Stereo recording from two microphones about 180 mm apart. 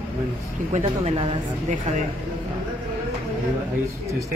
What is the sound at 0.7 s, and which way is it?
Speech, 35° right (ahead or behind).